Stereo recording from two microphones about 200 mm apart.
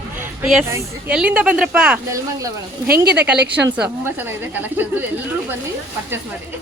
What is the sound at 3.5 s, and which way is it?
Speech, 5° right (ahead or behind).